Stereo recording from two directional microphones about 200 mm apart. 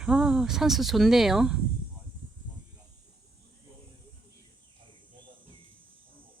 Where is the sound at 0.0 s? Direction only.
5° right (ahead or behind).